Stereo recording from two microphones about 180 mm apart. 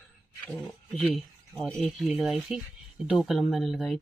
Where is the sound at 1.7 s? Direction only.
Centre (ahead or behind).